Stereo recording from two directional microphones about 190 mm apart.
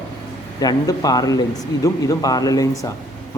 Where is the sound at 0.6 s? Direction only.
20° left (ahead or behind).